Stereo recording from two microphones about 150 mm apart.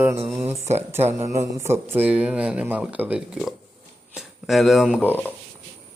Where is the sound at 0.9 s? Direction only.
15° right (ahead or behind).